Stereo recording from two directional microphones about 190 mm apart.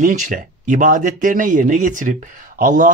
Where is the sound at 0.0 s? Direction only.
40° right (ahead or behind).